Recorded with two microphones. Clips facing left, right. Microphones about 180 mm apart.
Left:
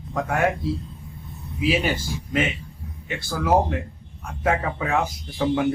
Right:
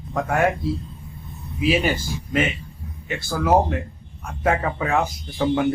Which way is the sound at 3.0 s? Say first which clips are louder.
Right 2 dB; 50° right (ahead or behind).